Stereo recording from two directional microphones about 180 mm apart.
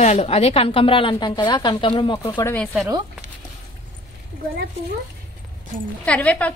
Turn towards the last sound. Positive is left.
turn(degrees=10)  # may be behind; listen again after turning